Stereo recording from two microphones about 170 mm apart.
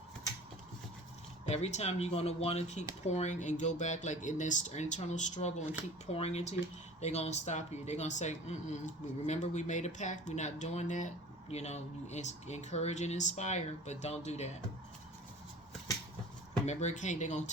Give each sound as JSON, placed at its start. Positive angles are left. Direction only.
{"t": 1.5, "sound": "speech", "side_deg": 40}
{"t": 16.6, "sound": "speech", "side_deg": 45}